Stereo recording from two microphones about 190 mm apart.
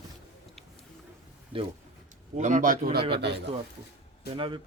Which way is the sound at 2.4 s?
40° right (ahead or behind).